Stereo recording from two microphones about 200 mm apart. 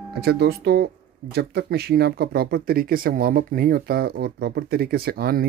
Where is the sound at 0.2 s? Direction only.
55° right (ahead or behind).